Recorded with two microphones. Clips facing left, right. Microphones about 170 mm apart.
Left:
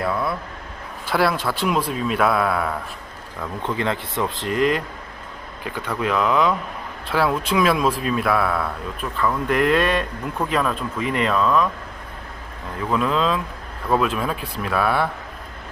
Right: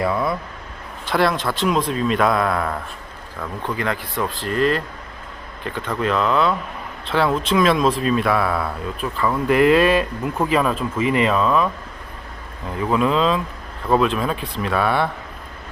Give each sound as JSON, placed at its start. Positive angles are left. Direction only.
{"t": 0.0, "sound": "speech", "side_deg": 0}
{"t": 3.6, "sound": "speech", "side_deg": 25}
{"t": 12.9, "sound": "speech", "side_deg": 0}